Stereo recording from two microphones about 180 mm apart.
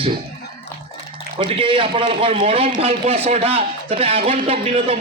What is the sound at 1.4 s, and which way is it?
A man's voice, 30° right (ahead or behind).